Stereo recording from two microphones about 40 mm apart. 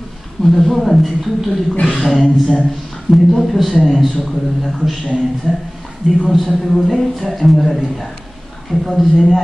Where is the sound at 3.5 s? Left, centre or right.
Centre.